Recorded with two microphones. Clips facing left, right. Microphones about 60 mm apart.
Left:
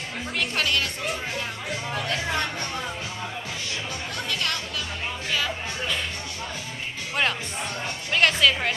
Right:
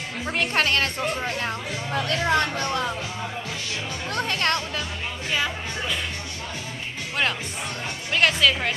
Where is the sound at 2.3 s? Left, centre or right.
Right.